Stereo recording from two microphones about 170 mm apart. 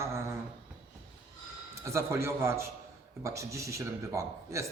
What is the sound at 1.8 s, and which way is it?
A man's voice, 15° right (ahead or behind).